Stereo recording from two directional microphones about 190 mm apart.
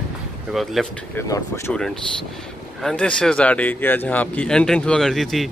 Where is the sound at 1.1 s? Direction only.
15° left (ahead or behind).